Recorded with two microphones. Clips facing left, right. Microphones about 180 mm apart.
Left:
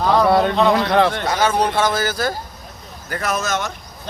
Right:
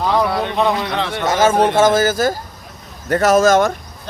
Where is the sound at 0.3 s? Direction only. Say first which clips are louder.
Left 5 dB; 55° left (ahead or behind).